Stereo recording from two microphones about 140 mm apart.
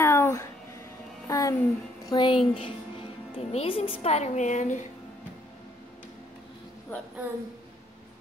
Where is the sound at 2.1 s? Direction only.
35° left (ahead or behind).